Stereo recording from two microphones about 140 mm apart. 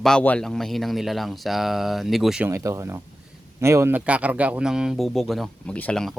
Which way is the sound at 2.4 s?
20° right (ahead or behind).